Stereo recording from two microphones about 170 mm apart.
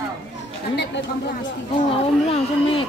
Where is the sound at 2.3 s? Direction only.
30° left (ahead or behind).